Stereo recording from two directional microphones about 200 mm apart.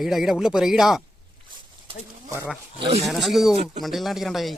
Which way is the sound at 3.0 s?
Centre (ahead or behind).